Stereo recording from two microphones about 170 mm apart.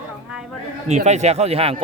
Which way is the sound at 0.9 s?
40° right (ahead or behind).